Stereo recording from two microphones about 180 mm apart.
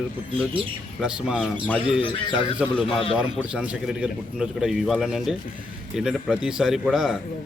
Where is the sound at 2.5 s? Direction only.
Centre (ahead or behind).